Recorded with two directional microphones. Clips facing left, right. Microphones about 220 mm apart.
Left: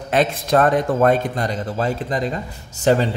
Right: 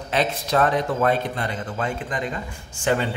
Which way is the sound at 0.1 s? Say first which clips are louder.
Left 5 dB; 50° left (ahead or behind).